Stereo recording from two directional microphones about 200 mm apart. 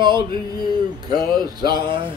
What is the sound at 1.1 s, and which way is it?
Speech, 45° left (ahead or behind).